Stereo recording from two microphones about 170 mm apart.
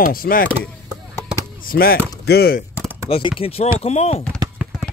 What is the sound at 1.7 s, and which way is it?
Speech, 60° left (ahead or behind).